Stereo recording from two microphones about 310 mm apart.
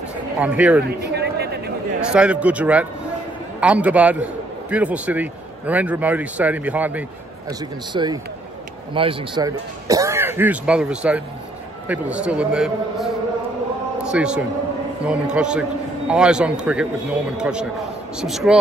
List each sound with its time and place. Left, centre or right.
0.4 s a man's voice: centre
1.1 s a sound: right
2.0 s a man's voice: centre